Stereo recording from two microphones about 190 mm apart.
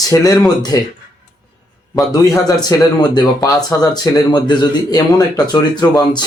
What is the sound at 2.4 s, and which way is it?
Speech, 20° left (ahead or behind).